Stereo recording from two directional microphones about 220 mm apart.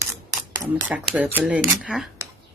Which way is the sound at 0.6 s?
5° right (ahead or behind).